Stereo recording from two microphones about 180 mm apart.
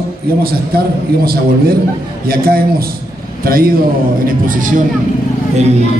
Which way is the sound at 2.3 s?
55° right (ahead or behind).